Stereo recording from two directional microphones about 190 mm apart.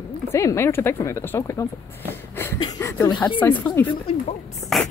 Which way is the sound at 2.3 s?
15° left (ahead or behind).